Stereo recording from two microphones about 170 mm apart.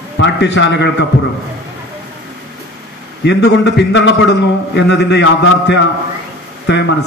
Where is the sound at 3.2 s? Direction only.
90° left.